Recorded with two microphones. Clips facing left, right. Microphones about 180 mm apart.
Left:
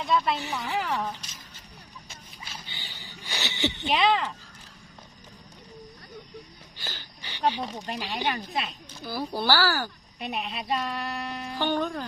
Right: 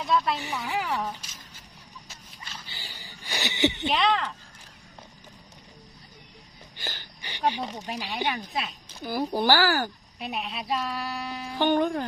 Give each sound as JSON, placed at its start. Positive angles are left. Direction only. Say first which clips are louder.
{"t": 0.0, "sound": "speech", "louder": "even", "side_deg": 0}
{"t": 0.4, "sound": "speech", "louder": "even", "side_deg": -10}
{"t": 2.0, "sound": "a sound", "louder": "left 1 dB", "side_deg": -5}
{"t": 3.8, "sound": "speech", "louder": "left 1 dB", "side_deg": 5}
{"t": 7.3, "sound": "a sound", "louder": "even", "side_deg": -15}
{"t": 7.6, "sound": "speech", "louder": "even", "side_deg": 0}
{"t": 9.0, "sound": "speech", "louder": "right 3 dB", "side_deg": -15}
{"t": 10.2, "sound": "speech", "louder": "left 1 dB", "side_deg": 0}
{"t": 11.6, "sound": "speech", "louder": "right 5 dB", "side_deg": -15}